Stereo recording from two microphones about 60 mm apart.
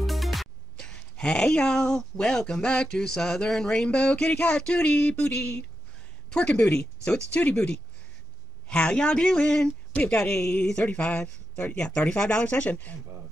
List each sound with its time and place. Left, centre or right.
0.0 s music: centre
0.7 s speech: centre
9.9 s speech: left
11.7 s speech: centre